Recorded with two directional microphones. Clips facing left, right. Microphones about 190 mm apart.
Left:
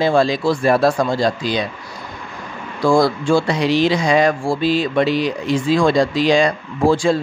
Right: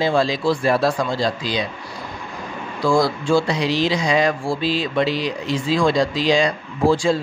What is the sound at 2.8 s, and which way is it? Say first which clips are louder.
Speech: left 3 dB; 55° left (ahead or behind).